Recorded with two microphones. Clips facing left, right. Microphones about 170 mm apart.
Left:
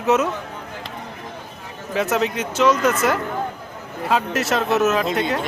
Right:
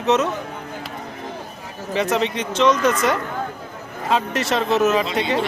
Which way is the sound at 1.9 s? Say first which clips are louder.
Even; 5° left (ahead or behind).